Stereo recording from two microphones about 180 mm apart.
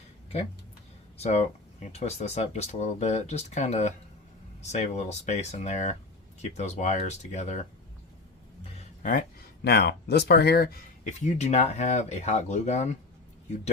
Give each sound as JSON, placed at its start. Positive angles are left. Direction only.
{"t": 1.2, "sound": "speech", "side_deg": 35}
{"t": 9.0, "sound": "speech", "side_deg": 55}
{"t": 11.0, "sound": "speech", "side_deg": 40}